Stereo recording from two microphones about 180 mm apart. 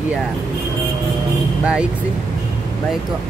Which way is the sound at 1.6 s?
5° right (ahead or behind).